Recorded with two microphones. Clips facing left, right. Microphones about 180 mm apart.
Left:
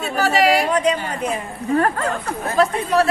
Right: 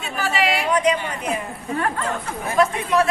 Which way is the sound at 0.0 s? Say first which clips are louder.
Left 5 dB; 40° left (ahead or behind).